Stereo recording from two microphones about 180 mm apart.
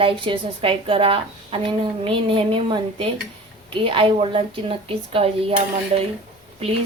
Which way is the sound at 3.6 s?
30° right (ahead or behind).